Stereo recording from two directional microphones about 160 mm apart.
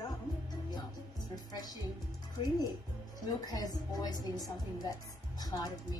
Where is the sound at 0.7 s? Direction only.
25° left (ahead or behind).